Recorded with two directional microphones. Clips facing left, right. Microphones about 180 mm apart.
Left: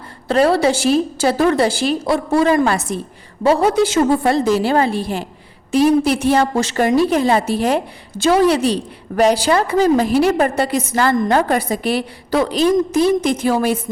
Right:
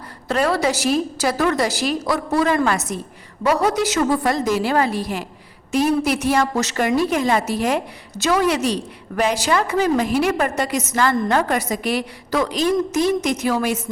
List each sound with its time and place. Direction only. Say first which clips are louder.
0.3 s a woman's voice: left 5 dB; 30° left (ahead or behind)